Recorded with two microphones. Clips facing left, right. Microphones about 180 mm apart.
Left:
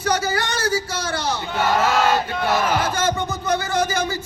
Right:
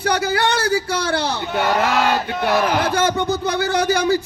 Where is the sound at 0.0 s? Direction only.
60° right (ahead or behind).